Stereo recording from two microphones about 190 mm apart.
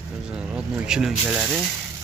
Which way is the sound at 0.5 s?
5° right (ahead or behind).